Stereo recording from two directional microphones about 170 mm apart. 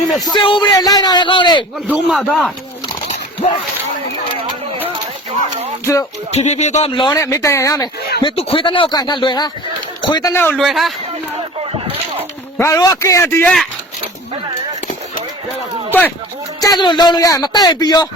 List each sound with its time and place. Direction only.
0.3 s speech: 30° left (ahead or behind)
1.9 s speech: centre (ahead or behind)
5.8 s a man's voice: 20° left (ahead or behind)
6.3 s speech: 40° left (ahead or behind)
6.9 s speech: 25° left (ahead or behind)
8.2 s speech: 30° left (ahead or behind)
10.3 s a man's voice: 10° left (ahead or behind)
10.6 s speech: centre (ahead or behind)
12.5 s a man's voice: 20° left (ahead or behind)
15.9 s speech: 10° left (ahead or behind)
16.6 s speech: 20° left (ahead or behind)